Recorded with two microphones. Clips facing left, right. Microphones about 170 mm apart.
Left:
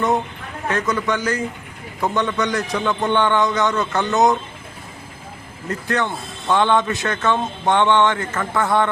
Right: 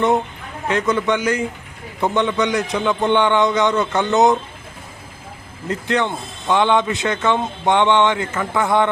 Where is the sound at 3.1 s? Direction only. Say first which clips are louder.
Right 2 dB; 15° right (ahead or behind).